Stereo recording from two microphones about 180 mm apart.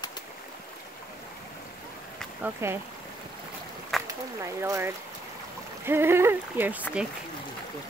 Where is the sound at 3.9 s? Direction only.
Centre (ahead or behind).